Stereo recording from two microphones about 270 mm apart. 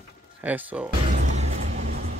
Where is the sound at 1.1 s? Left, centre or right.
Right.